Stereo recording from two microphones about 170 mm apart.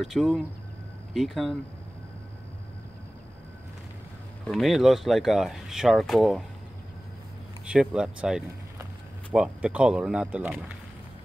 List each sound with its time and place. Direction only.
0.0 s speech: centre (ahead or behind)
4.5 s speech: centre (ahead or behind)
7.6 s speech: 5° right (ahead or behind)